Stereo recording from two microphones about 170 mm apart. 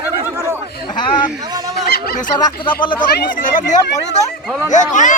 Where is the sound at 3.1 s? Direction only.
60° left (ahead or behind).